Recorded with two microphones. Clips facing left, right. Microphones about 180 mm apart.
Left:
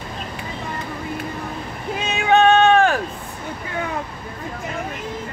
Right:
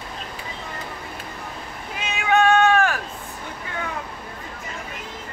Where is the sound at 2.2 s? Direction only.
30° left (ahead or behind).